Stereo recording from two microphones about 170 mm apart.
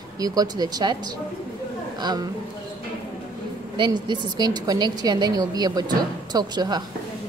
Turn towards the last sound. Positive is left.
turn(degrees=-25)  # may be behind; listen again after turning